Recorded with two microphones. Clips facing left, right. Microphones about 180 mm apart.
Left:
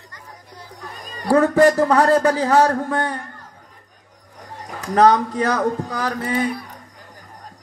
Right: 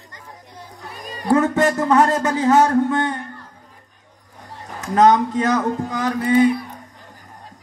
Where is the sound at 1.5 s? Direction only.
35° left (ahead or behind).